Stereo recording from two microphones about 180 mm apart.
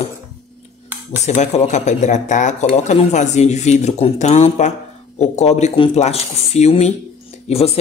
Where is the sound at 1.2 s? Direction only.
40° left (ahead or behind).